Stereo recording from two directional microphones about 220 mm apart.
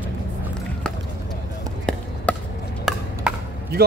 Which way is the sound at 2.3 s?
5° left (ahead or behind).